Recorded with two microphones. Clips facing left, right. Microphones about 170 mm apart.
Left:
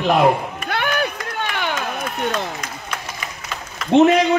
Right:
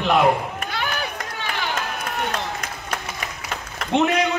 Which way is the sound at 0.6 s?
60° left (ahead or behind).